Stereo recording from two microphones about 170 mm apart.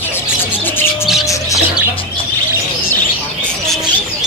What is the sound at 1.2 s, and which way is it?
Bird, 20° left (ahead or behind).